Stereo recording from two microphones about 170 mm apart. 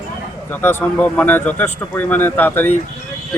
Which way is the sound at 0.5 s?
10° left (ahead or behind).